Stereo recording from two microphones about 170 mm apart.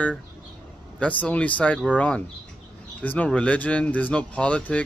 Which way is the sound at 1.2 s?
10° left (ahead or behind).